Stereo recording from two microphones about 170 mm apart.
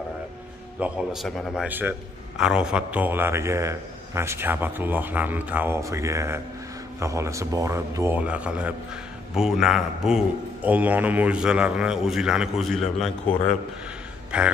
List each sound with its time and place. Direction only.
0.7 s a man's voice: 5° right (ahead or behind)